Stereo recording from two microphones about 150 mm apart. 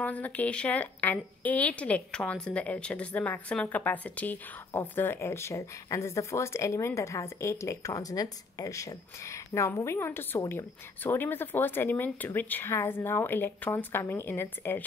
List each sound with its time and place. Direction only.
0.0 s a woman's voice: 10° left (ahead or behind)